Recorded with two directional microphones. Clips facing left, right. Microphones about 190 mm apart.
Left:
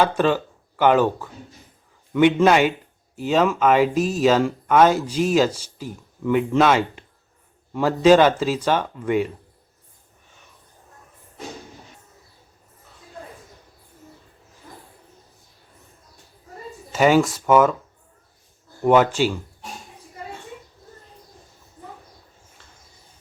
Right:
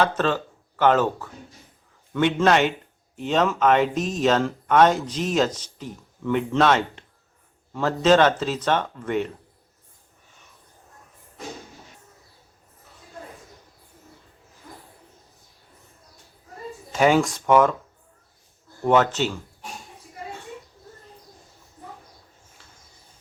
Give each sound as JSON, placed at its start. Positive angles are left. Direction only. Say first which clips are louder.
{"t": 0.0, "sound": "speech", "louder": "left 3 dB", "side_deg": 10}
{"t": 16.9, "sound": "speech", "louder": "left 2 dB", "side_deg": 5}
{"t": 18.9, "sound": "speech", "louder": "left 3 dB", "side_deg": 10}